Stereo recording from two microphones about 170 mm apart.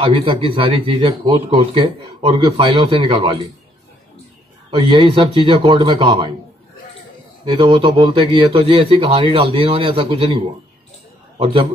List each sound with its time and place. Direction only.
0.0 s speech: 30° right (ahead or behind)
4.6 s speech: 30° right (ahead or behind)
7.4 s a man's voice: 30° right (ahead or behind)